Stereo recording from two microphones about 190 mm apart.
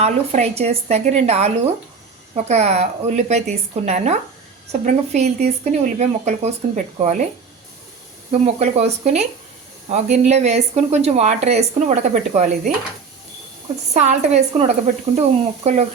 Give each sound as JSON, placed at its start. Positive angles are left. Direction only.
{"t": 0.0, "sound": "speech", "side_deg": -35}
{"t": 8.3, "sound": "speech", "side_deg": -35}
{"t": 13.9, "sound": "speech", "side_deg": -35}